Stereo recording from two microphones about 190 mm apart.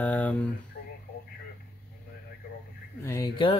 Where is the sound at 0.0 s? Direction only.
10° left (ahead or behind).